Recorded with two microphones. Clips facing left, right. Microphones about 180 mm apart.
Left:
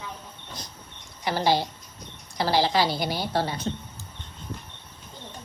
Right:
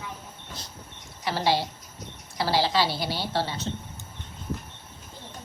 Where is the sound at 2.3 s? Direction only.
20° left (ahead or behind).